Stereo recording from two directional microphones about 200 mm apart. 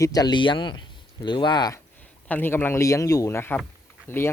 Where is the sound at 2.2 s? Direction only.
10° left (ahead or behind).